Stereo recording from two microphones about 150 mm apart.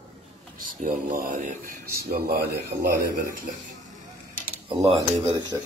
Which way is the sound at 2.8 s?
80° right.